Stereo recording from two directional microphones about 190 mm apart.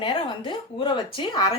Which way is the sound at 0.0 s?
25° left (ahead or behind).